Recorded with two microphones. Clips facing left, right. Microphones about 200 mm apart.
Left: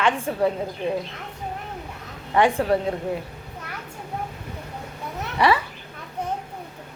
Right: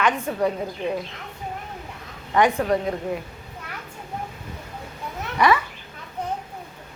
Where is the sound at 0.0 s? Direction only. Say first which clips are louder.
Left 1 dB; 30° left (ahead or behind).